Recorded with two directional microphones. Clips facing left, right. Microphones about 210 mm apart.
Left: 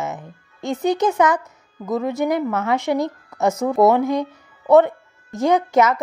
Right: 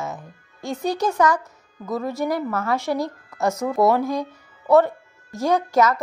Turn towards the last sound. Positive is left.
turn(degrees=20)  # may be behind; listen again after turning